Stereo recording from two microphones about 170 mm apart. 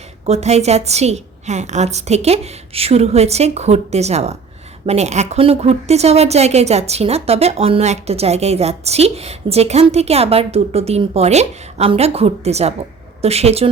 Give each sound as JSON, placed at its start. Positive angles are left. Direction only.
{"t": 0.3, "sound": "a woman's voice", "side_deg": -40}